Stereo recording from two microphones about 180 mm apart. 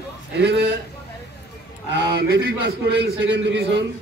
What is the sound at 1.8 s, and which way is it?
A man's voice, 70° right (ahead or behind).